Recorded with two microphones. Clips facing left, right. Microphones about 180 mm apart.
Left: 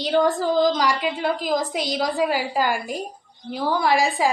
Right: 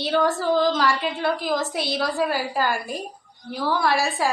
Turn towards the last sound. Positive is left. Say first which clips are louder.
# left 2 dB
turn(degrees=15)  # may be behind; listen again after turning